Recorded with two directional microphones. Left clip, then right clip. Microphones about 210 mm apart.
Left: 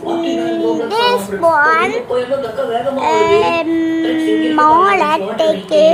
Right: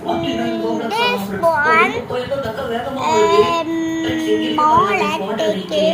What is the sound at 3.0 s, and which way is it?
A woman's voice, 25° left (ahead or behind).